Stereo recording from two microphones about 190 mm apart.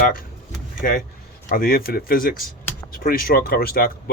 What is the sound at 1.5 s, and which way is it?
Speech, 50° left (ahead or behind).